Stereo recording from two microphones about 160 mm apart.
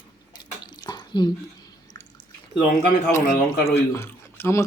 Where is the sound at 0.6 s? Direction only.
25° left (ahead or behind).